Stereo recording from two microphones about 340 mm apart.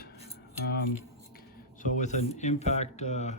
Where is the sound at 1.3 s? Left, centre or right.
Left.